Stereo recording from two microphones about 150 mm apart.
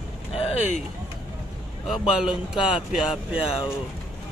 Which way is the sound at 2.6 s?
35° left (ahead or behind).